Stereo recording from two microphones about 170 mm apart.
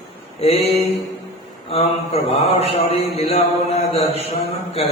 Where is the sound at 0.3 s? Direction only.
35° left (ahead or behind).